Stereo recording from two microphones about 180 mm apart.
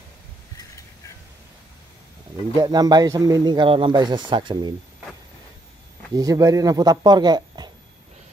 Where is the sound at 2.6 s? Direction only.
20° right (ahead or behind).